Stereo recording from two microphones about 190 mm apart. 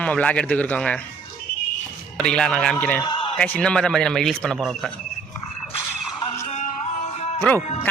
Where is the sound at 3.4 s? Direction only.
5° left (ahead or behind).